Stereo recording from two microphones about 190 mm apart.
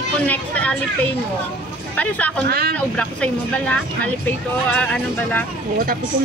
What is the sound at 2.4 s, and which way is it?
Speech, 55° right (ahead or behind).